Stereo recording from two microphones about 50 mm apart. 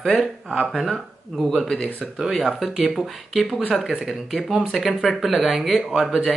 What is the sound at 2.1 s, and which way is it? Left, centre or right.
Speech, centre.